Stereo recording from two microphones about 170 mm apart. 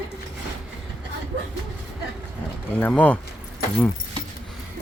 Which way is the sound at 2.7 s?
10° left (ahead or behind).